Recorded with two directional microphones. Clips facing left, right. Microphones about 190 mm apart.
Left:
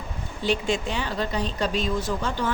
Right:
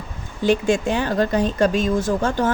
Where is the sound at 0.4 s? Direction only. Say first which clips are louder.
Right 7 dB; 50° right (ahead or behind).